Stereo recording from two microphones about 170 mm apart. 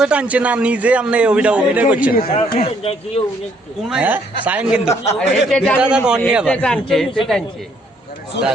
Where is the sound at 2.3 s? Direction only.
35° left (ahead or behind).